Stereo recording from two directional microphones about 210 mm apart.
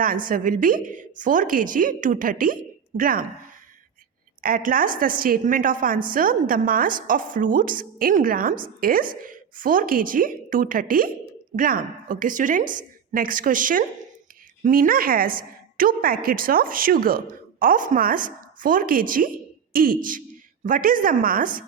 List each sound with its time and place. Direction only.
0.3 s a woman's voice: 40° right (ahead or behind)
4.4 s a woman's voice: 45° right (ahead or behind)